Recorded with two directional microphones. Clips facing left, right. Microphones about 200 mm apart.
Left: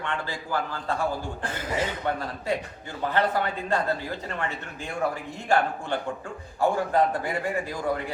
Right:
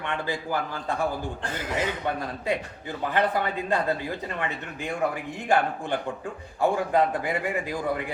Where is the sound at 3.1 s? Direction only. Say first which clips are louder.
Even; 15° right (ahead or behind).